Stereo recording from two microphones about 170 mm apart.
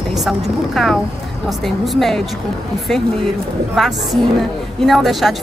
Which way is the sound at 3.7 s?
Centre (ahead or behind).